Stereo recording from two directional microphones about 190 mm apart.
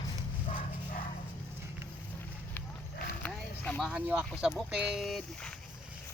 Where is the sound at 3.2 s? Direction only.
5° left (ahead or behind).